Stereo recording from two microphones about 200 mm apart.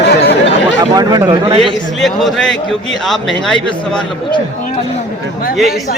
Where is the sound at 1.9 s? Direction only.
Centre (ahead or behind).